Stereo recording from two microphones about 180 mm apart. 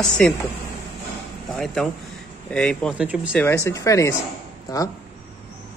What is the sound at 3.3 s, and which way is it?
Speech, 10° left (ahead or behind).